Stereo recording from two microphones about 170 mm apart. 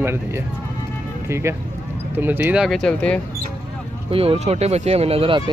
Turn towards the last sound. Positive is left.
turn(degrees=-30)  # may be behind; listen again after turning